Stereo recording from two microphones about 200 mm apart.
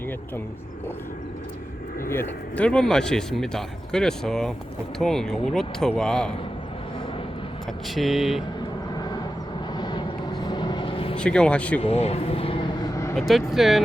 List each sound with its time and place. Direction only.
2.6 s speech: 5° left (ahead or behind)
7.9 s speech: centre (ahead or behind)
9.0 s vehicle: 20° left (ahead or behind)
11.2 s speech: 5° left (ahead or behind)
11.8 s speech: 30° left (ahead or behind); by 13.1 s 15° left (ahead or behind)
13.1 s speech: centre (ahead or behind)